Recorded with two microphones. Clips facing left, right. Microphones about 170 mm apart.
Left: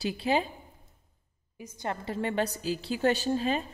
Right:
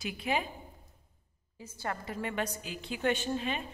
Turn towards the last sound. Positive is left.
turn(degrees=35)  # may be behind; listen again after turning